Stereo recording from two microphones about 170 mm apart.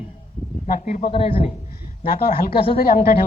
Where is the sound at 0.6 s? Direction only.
55° left (ahead or behind).